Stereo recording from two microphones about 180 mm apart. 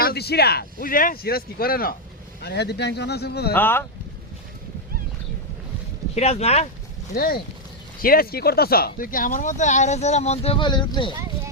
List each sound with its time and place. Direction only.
0.0 s speech: 60° left (ahead or behind)
2.4 s speech: 65° left (ahead or behind)
3.5 s speech: 10° left (ahead or behind)
6.1 s speech: 35° left (ahead or behind)
7.1 s speech: 55° left (ahead or behind); by 11.1 s 25° left (ahead or behind)